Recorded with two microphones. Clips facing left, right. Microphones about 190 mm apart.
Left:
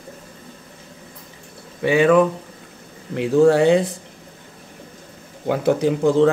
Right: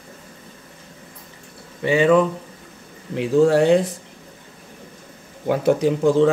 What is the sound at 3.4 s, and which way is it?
Speech, 70° left (ahead or behind).